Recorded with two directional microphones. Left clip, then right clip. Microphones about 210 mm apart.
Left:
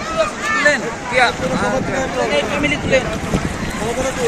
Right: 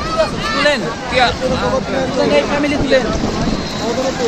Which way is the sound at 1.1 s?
25° left (ahead or behind).